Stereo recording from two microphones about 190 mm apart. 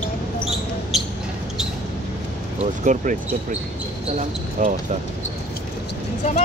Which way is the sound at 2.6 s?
40° right (ahead or behind).